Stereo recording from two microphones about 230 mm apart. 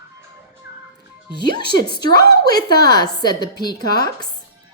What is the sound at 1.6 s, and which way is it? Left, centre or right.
A woman's voice, centre.